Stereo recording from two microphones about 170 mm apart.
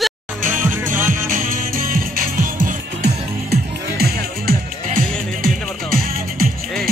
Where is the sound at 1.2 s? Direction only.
55° right (ahead or behind).